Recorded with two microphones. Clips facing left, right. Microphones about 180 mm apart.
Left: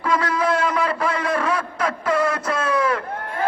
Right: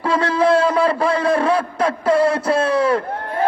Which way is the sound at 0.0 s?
30° right (ahead or behind).